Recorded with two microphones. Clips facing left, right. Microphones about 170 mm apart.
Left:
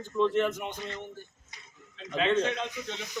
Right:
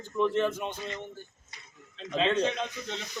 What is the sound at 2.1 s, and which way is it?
Speech, 20° right (ahead or behind).